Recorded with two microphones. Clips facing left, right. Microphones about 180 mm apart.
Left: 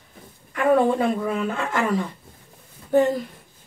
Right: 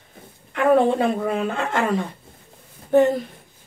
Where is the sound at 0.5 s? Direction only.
55° right (ahead or behind).